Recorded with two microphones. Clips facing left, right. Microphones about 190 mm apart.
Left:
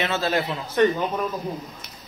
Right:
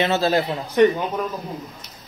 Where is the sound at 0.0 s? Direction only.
35° right (ahead or behind).